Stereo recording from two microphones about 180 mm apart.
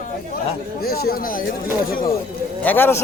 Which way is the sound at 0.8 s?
60° left (ahead or behind).